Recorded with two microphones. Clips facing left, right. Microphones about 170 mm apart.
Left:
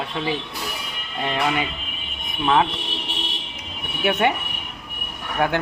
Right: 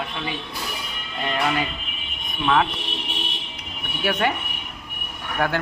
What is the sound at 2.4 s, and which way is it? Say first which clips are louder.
Speech: left 1 dB; 25° left (ahead or behind).